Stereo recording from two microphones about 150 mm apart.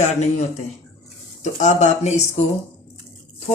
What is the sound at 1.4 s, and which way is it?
Speech, 50° left (ahead or behind).